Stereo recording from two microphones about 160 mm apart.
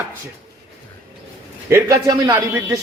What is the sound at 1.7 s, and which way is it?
Speech, 20° right (ahead or behind).